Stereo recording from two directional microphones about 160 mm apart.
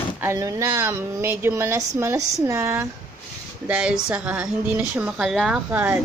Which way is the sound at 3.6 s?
5° right (ahead or behind).